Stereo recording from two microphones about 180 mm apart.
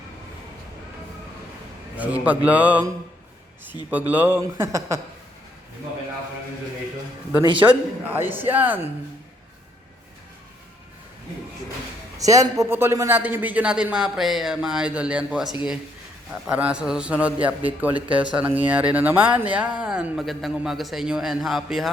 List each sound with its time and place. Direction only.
2.0 s a man's voice: 10° right (ahead or behind)
7.4 s a man's voice: 30° right (ahead or behind)
8.0 s a man's voice: 10° right (ahead or behind)
12.1 s a man's voice: 20° right (ahead or behind); by 21.8 s centre (ahead or behind)